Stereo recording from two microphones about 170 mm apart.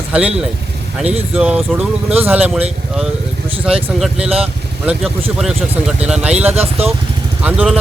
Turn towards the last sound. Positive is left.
turn(degrees=-5)  # may be behind; listen again after turning